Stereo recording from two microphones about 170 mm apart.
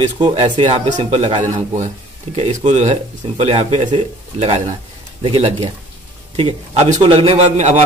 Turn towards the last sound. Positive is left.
turn(degrees=-45)  # may be behind; listen again after turning